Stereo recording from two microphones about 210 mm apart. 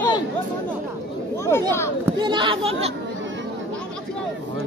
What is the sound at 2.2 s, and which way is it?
Speech, 25° right (ahead or behind).